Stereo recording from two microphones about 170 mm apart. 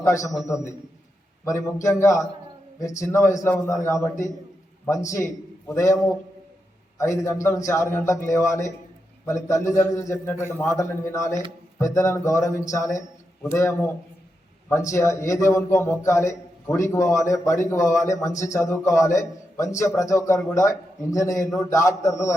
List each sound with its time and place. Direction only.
0.0 s a man's voice: 20° left (ahead or behind)
7.0 s a man's voice: 20° left (ahead or behind)
14.9 s a man's voice: 15° left (ahead or behind)